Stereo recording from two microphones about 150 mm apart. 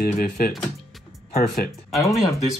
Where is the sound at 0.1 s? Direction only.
70° left (ahead or behind).